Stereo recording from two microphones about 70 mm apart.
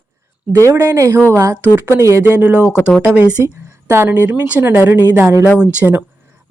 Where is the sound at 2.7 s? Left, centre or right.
Left.